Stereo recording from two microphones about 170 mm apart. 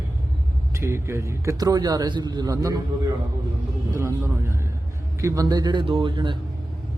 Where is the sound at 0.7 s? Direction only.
15° right (ahead or behind).